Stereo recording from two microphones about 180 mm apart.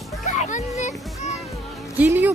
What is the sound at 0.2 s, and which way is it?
Children playing, 45° left (ahead or behind).